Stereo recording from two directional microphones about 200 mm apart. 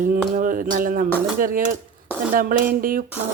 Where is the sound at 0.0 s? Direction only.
40° right (ahead or behind).